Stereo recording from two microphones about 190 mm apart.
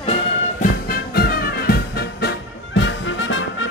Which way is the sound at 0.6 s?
55° left (ahead or behind).